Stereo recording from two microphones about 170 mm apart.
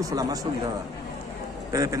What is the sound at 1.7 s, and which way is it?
Speech, 20° right (ahead or behind).